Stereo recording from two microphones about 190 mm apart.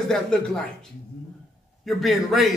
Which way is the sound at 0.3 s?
5° left (ahead or behind).